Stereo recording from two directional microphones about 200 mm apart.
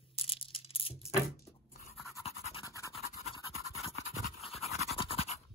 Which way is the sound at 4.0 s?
45° left (ahead or behind).